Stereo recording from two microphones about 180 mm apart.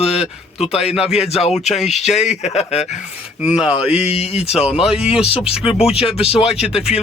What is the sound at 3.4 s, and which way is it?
Speech, 5° right (ahead or behind).